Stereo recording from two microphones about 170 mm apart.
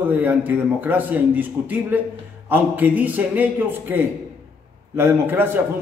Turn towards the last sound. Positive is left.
turn(degrees=-10)  # may be behind; listen again after turning